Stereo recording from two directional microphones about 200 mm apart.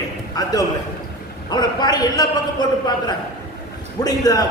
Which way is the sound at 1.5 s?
20° left (ahead or behind).